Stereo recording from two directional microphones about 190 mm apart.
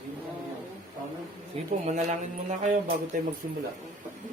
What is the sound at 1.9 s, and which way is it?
Mantra, 40° right (ahead or behind).